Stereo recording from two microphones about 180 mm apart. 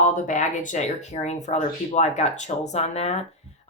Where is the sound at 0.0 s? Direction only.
45° left (ahead or behind).